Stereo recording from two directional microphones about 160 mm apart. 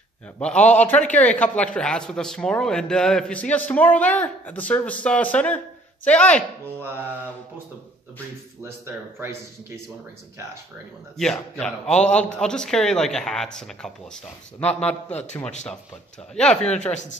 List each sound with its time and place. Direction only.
0.4 s a man's voice: 10° left (ahead or behind)
8.6 s speech: 15° right (ahead or behind)
11.5 s a man's voice: 5° left (ahead or behind)